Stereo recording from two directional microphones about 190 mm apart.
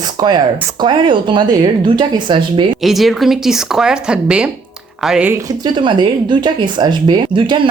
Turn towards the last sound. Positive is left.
turn(degrees=-25)  # may be behind; listen again after turning